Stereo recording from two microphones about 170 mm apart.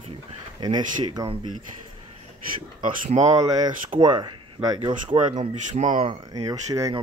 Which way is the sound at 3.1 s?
35° right (ahead or behind).